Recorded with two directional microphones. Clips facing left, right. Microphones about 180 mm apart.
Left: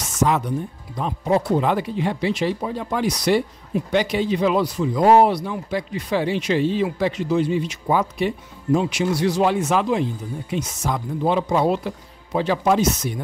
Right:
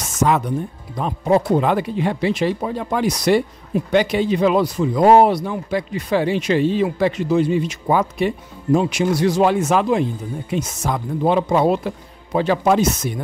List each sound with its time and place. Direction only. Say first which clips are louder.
0.0 s music: right 2 dB; 50° right (ahead or behind)
0.9 s speech: right 3 dB; 50° right (ahead or behind)